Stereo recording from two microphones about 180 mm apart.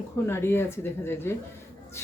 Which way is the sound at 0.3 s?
15° left (ahead or behind).